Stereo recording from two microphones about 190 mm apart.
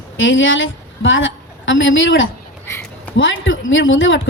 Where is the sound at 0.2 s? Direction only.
90° left.